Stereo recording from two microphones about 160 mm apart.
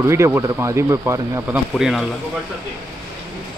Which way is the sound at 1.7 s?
Centre (ahead or behind).